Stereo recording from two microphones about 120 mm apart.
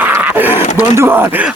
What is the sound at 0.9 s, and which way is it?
Speech, 20° right (ahead or behind).